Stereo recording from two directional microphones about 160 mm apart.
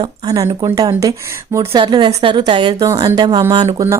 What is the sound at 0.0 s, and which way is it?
A woman's voice, 25° right (ahead or behind).